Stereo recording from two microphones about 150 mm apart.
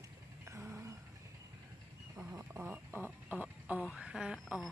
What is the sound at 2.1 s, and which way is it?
Wild animals, 5° right (ahead or behind).